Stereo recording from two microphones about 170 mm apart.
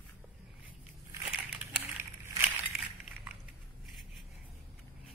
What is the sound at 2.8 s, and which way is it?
Crushing, 5° right (ahead or behind).